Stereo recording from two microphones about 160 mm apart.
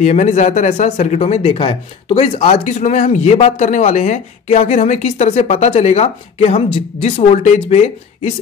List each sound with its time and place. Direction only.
0.0 s speech: 40° left (ahead or behind); by 0.9 s 60° left (ahead or behind)
0.9 s speech: 40° left (ahead or behind)